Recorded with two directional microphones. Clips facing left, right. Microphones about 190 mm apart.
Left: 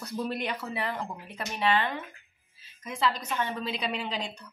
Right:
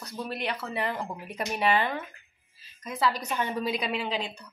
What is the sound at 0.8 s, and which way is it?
A woman's voice, 10° right (ahead or behind).